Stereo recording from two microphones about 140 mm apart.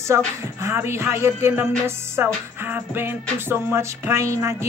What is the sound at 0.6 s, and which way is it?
Music, 20° right (ahead or behind).